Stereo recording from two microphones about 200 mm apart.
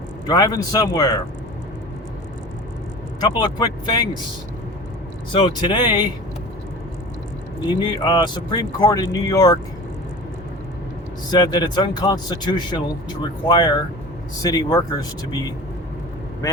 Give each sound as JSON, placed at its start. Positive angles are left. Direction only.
{"t": 0.3, "sound": "speech", "side_deg": 20}
{"t": 3.2, "sound": "speech", "side_deg": 20}
{"t": 5.3, "sound": "speech", "side_deg": 25}
{"t": 7.7, "sound": "speech", "side_deg": 20}
{"t": 11.3, "sound": "speech", "side_deg": 20}